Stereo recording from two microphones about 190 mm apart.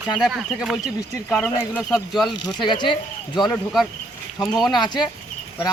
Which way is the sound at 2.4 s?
25° left (ahead or behind).